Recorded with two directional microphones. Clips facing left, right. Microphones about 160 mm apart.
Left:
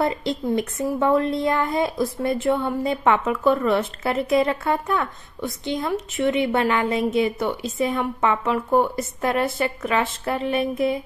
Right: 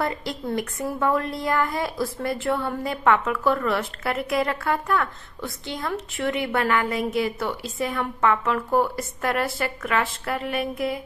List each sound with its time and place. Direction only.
0.0 s a woman's voice: 20° left (ahead or behind)